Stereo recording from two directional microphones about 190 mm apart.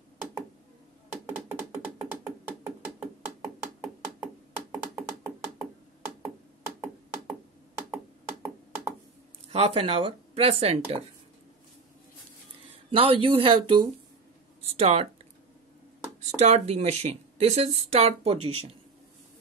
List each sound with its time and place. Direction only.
1.1 s music: 5° right (ahead or behind)
7.9 s a sound: 15° right (ahead or behind)
9.5 s speech: 30° right (ahead or behind)
12.9 s speech: 30° right (ahead or behind)
16.3 s speech: 35° right (ahead or behind)